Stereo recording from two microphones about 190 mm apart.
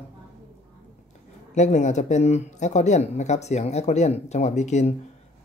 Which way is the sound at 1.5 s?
40° left (ahead or behind).